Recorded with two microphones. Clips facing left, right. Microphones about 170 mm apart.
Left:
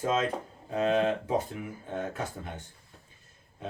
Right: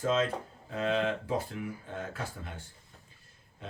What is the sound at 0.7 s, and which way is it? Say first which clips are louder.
Speech: left 4 dB; 20° left (ahead or behind).